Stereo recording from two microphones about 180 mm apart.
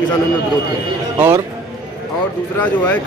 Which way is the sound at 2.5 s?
10° left (ahead or behind).